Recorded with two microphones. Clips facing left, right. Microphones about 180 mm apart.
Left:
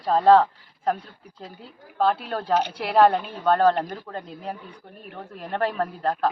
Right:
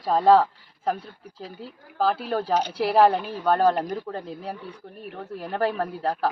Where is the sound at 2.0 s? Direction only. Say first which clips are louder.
Even; 5° right (ahead or behind).